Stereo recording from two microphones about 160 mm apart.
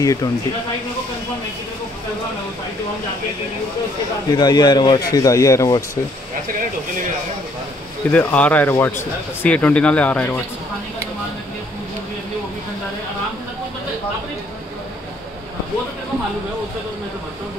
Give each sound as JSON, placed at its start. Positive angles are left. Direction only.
{"t": 0.0, "sound": "speech", "side_deg": 20}
{"t": 4.3, "sound": "speech", "side_deg": 25}
{"t": 8.1, "sound": "speech", "side_deg": 10}